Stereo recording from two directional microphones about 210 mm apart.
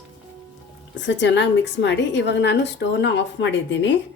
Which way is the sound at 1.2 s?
55° left (ahead or behind).